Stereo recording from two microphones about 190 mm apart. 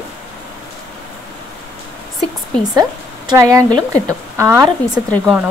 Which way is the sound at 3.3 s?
15° right (ahead or behind).